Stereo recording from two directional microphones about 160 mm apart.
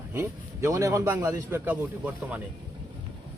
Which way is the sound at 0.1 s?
15° right (ahead or behind).